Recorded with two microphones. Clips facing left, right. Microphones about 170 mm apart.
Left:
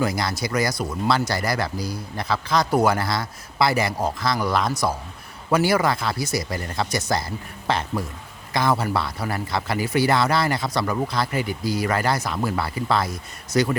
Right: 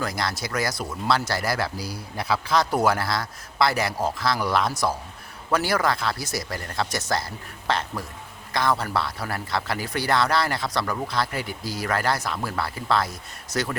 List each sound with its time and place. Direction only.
0.0 s speech: centre (ahead or behind)